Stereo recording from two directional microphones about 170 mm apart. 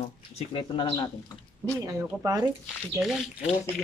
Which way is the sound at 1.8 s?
20° right (ahead or behind).